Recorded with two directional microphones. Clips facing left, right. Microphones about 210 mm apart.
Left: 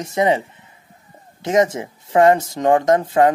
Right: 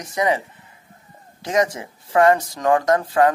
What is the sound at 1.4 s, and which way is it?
Speech, 25° left (ahead or behind).